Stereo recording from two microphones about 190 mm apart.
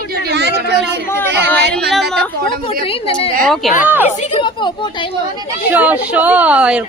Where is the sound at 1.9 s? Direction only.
Centre (ahead or behind).